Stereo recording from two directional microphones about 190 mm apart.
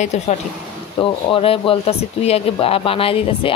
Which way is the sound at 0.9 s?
30° left (ahead or behind).